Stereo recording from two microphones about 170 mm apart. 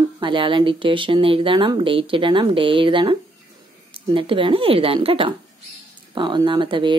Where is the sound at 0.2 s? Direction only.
30° right (ahead or behind).